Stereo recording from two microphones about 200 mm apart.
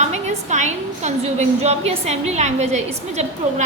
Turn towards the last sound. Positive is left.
turn(degrees=-35)  # may be behind; listen again after turning